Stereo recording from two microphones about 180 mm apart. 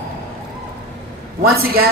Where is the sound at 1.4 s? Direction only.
55° right (ahead or behind).